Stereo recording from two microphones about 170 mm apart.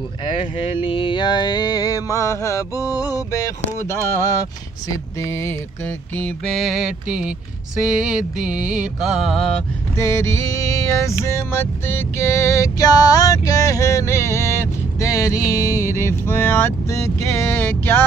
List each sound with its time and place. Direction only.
0.2 s mantra: 30° left (ahead or behind)
3.1 s music: 20° left (ahead or behind); by 7.3 s 5° right (ahead or behind)
8.0 s mantra: 5° right (ahead or behind)
9.9 s music: 15° left (ahead or behind)